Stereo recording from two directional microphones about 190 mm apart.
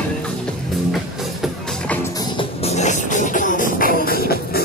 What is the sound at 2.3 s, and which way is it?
Music, 35° left (ahead or behind).